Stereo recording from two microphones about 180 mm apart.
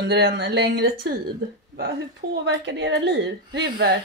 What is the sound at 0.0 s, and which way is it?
A woman's voice, 75° right (ahead or behind).